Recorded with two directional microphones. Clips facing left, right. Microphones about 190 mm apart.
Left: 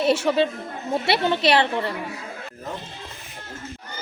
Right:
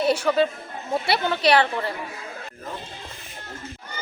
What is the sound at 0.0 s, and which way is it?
A woman's voice, 25° left (ahead or behind).